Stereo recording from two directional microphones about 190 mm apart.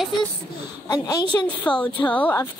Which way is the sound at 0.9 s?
20° left (ahead or behind).